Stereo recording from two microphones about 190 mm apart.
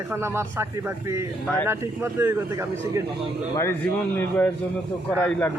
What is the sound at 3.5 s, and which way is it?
A man's voice, 10° left (ahead or behind).